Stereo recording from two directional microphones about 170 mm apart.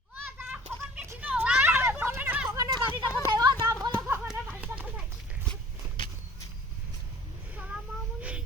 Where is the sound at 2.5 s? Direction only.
25° right (ahead or behind).